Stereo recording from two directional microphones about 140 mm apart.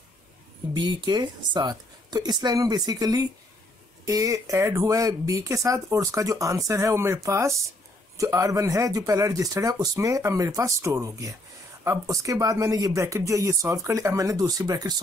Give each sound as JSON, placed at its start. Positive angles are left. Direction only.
{"t": 0.7, "sound": "a man's voice", "side_deg": -30}